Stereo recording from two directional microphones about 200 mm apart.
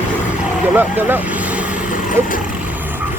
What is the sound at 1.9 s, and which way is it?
Vehicle, 40° left (ahead or behind).